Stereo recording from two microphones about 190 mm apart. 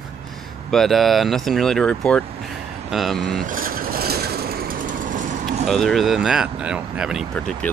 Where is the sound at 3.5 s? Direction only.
50° right (ahead or behind).